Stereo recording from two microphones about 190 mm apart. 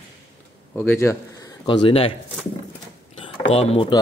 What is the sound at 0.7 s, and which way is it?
Speech, 10° left (ahead or behind).